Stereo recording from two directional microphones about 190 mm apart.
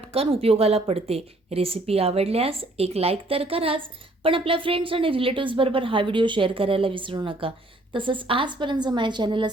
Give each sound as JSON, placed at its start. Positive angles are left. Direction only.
{"t": 0.1, "sound": "a woman's voice", "side_deg": -30}